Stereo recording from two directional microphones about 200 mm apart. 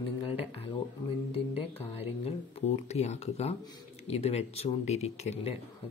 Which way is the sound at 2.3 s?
30° left (ahead or behind).